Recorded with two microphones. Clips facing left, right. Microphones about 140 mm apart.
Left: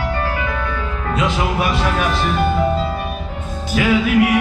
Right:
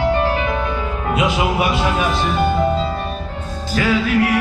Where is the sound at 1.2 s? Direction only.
10° right (ahead or behind).